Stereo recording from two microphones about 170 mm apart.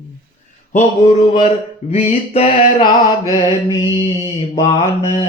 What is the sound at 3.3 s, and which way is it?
Mantra, 20° left (ahead or behind).